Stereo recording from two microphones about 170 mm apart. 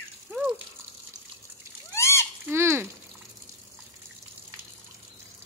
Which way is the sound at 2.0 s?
15° left (ahead or behind).